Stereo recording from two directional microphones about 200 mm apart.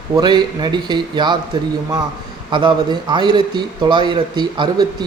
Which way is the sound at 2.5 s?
25° right (ahead or behind).